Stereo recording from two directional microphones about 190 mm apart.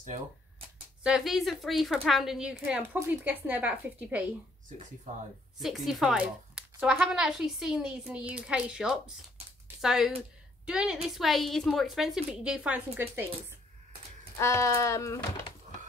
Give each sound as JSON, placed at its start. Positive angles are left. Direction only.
{"t": 1.0, "sound": "speech", "side_deg": 0}
{"t": 5.6, "sound": "a woman's voice", "side_deg": 0}
{"t": 14.3, "sound": "speech", "side_deg": 15}